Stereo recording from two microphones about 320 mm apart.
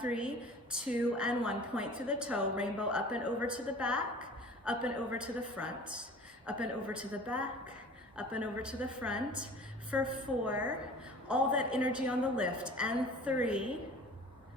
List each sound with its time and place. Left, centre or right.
0.0 s a woman's voice: centre